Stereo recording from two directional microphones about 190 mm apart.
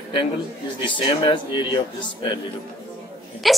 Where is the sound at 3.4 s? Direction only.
Centre (ahead or behind).